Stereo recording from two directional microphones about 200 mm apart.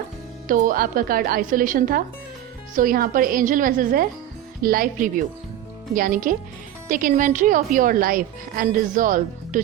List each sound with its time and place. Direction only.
0.4 s a woman's voice: 45° right (ahead or behind)